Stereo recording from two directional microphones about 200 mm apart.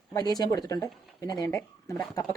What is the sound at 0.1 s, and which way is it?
Speech, 20° left (ahead or behind).